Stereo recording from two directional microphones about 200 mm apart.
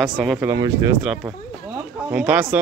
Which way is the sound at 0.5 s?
15° right (ahead or behind).